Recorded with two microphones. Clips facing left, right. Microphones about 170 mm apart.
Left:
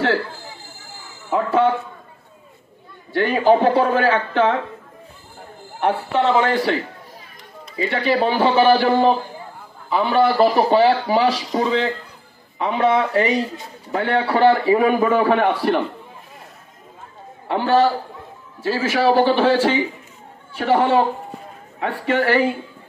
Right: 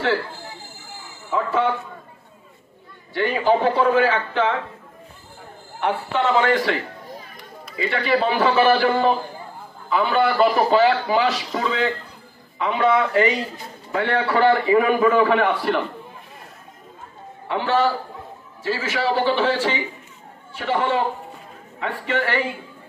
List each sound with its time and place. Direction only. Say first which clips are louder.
1.3 s a man's voice: left 4 dB; 40° left (ahead or behind)
3.2 s a man's voice: left 4 dB; 40° left (ahead or behind)
5.8 s a man's voice: left 3 dB; 40° left (ahead or behind)
17.5 s a man's voice: left 4 dB; 40° left (ahead or behind)